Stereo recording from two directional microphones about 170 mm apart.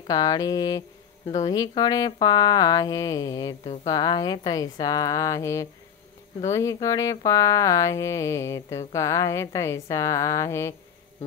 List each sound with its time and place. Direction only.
0.1 s speech: 20° left (ahead or behind)